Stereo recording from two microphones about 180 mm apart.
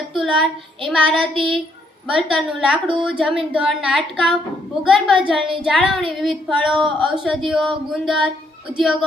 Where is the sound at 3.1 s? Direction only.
5° right (ahead or behind).